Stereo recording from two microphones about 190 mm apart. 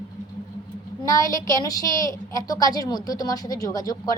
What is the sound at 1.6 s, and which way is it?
A woman's voice, 20° left (ahead or behind).